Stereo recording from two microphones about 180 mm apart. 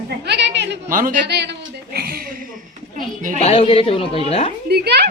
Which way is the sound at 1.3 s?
70° right (ahead or behind).